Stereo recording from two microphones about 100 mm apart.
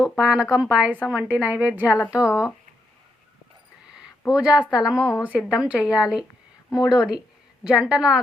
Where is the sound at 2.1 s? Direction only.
30° left (ahead or behind).